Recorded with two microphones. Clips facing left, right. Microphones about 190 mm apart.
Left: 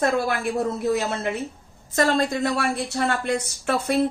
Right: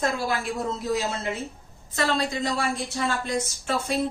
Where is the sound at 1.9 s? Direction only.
50° left (ahead or behind).